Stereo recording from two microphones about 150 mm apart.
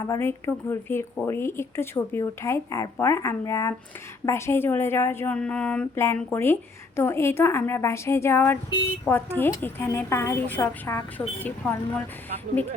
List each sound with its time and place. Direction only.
0.0 s speech: 20° left (ahead or behind)